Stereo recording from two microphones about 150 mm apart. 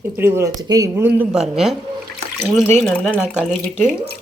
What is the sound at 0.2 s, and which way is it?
Speech, 15° right (ahead or behind).